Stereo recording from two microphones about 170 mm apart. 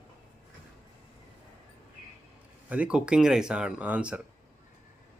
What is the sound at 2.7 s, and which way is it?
Speech, 5° right (ahead or behind).